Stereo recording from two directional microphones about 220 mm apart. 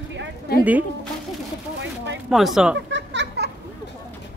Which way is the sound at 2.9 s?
50° right (ahead or behind).